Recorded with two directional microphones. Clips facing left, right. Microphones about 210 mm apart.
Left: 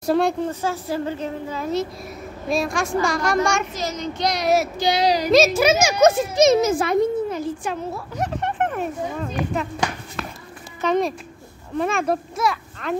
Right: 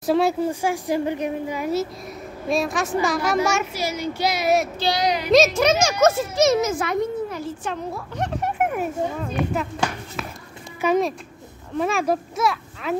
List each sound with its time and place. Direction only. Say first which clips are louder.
0.0 s a child's voice: even; 5° right (ahead or behind)
4.7 s a child's voice: left 2 dB; 20° left (ahead or behind)
5.0 s a woman's voice: left 5 dB; 35° left (ahead or behind)
5.3 s a child's voice: right 1 dB; 5° left (ahead or behind)
6.6 s a child's voice: left 4 dB; 30° left (ahead or behind)
7.7 s speech: left 1 dB; 5° left (ahead or behind)
10.2 s run: left 1 dB; 5° right (ahead or behind)
10.8 s speech: right 1 dB; 5° right (ahead or behind)